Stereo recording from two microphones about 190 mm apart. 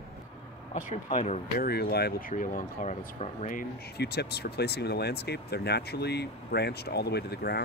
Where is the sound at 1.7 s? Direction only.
55° left (ahead or behind).